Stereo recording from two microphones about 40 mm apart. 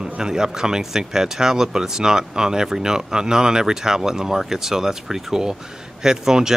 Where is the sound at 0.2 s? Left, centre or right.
Centre.